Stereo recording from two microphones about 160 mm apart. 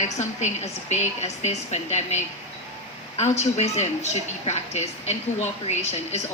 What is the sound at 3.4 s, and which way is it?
A woman's voice, 45° left (ahead or behind).